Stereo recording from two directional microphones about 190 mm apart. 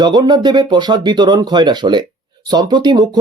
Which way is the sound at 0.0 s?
20° right (ahead or behind).